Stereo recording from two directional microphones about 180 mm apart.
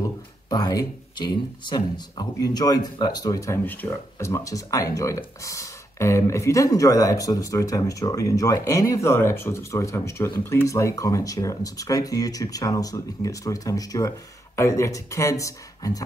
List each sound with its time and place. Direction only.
0.5 s speech: 20° left (ahead or behind)